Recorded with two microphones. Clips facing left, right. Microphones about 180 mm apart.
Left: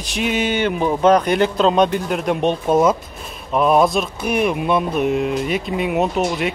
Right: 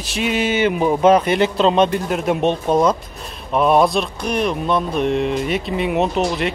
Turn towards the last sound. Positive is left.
turn(degrees=0)  # may be behind; listen again after turning